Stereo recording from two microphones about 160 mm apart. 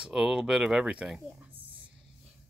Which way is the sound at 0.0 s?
5° right (ahead or behind).